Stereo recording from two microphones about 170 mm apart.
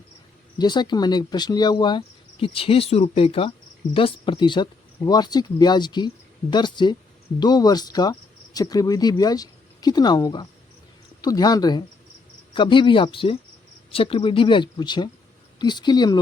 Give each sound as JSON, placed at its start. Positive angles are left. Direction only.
{"t": 0.6, "sound": "speech", "side_deg": 25}